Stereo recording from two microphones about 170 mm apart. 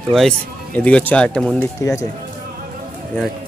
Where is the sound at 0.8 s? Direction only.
10° left (ahead or behind).